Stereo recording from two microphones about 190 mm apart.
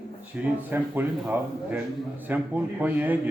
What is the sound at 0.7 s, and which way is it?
A man's voice, 10° right (ahead or behind).